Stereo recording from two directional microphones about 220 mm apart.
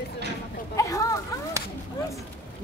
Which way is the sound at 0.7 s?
15° left (ahead or behind).